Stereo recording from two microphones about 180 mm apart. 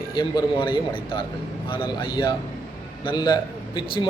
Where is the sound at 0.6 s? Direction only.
30° left (ahead or behind).